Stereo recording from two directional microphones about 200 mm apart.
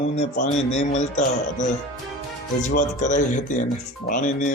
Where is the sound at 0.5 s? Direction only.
35° left (ahead or behind).